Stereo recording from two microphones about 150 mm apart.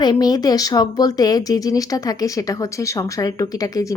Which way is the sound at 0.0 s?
25° left (ahead or behind).